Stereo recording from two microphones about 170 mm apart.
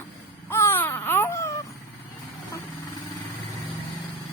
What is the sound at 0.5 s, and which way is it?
Baby cry, 15° left (ahead or behind).